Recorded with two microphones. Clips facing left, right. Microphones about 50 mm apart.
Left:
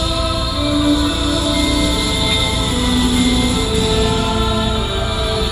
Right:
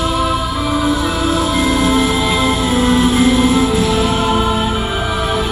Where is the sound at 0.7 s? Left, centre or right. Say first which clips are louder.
Left 2 dB; right.